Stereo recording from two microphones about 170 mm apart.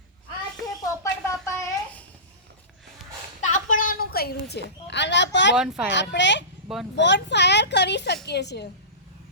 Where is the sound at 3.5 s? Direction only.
50° left (ahead or behind); by 5.5 s 90° left.